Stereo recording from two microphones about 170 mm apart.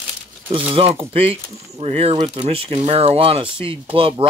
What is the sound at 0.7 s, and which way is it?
Speech, 30° right (ahead or behind).